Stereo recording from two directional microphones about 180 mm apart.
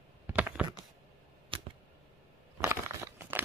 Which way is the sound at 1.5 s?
30° right (ahead or behind).